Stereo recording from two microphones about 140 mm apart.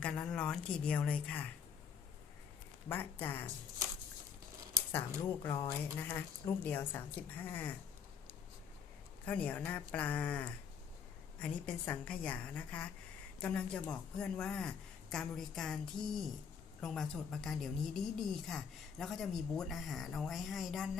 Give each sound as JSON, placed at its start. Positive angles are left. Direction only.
{"t": 0.0, "sound": "a woman's voice", "side_deg": 5}
{"t": 2.9, "sound": "a woman's voice", "side_deg": 15}
{"t": 4.9, "sound": "a woman's voice", "side_deg": 15}
{"t": 6.0, "sound": "a woman's voice", "side_deg": 15}
{"t": 9.2, "sound": "a woman's voice", "side_deg": 10}